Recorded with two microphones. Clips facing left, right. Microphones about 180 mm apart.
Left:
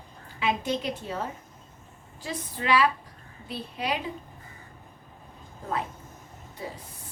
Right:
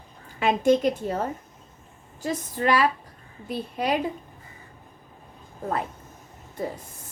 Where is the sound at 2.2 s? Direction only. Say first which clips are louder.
Right 7 dB; 45° right (ahead or behind).